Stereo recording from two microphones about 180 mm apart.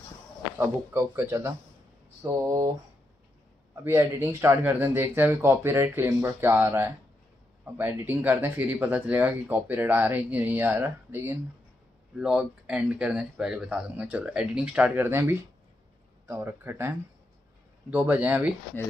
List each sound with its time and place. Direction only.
0.6 s speech: 15° right (ahead or behind)
3.8 s speech: 15° right (ahead or behind)